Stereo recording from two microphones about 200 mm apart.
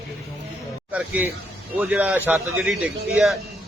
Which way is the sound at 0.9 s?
10° right (ahead or behind).